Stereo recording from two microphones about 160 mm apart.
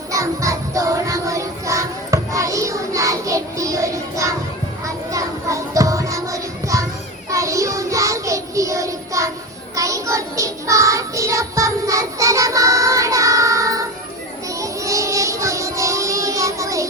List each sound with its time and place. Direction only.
0.1 s music: 20° right (ahead or behind)
7.3 s child singing: 20° right (ahead or behind)